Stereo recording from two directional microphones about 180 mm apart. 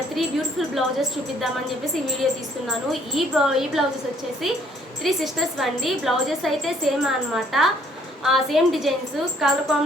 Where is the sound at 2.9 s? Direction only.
Centre (ahead or behind).